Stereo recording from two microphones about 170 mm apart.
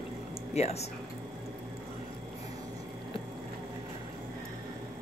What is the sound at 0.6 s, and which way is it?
Speech, 40° left (ahead or behind).